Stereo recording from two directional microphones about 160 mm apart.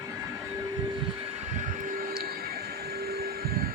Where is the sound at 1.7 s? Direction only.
55° right (ahead or behind).